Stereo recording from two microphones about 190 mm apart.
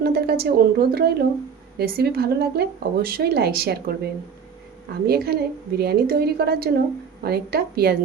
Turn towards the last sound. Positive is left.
turn(degrees=-55)  # may be behind; listen again after turning